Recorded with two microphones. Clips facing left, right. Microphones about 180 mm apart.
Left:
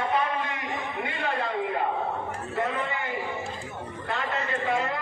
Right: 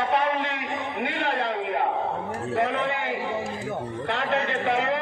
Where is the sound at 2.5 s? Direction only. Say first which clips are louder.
Right 4 dB; 70° right (ahead or behind).